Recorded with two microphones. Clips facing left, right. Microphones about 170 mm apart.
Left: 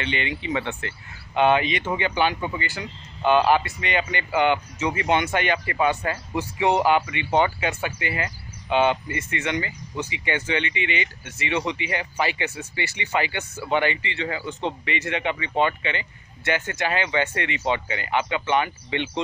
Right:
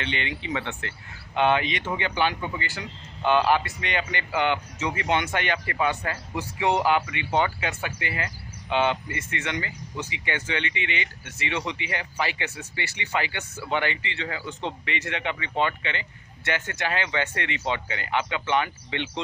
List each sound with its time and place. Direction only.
0.0 s speech: 10° left (ahead or behind)